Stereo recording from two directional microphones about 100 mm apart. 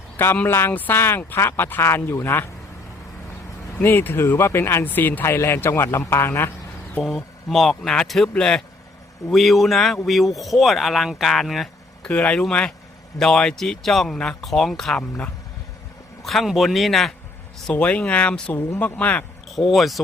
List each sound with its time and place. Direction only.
0.3 s speech: 20° left (ahead or behind)
3.8 s speech: 20° left (ahead or behind)
7.5 s speech: centre (ahead or behind)
12.0 s speech: 10° left (ahead or behind)
16.2 s speech: centre (ahead or behind)
19.5 s speech: centre (ahead or behind)